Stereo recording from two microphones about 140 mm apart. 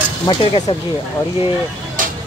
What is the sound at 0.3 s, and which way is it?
Speech, 40° left (ahead or behind).